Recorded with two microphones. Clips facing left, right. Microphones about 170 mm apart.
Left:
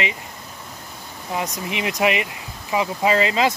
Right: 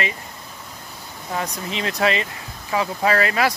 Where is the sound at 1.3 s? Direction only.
15° left (ahead or behind).